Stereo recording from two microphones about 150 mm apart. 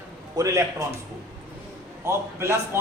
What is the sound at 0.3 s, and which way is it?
Speech, 20° right (ahead or behind).